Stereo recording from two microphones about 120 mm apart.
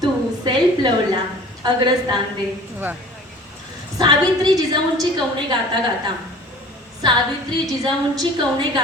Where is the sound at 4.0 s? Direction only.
35° right (ahead or behind).